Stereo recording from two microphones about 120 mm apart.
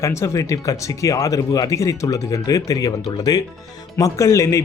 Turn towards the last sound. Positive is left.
turn(degrees=25)  # may be behind; listen again after turning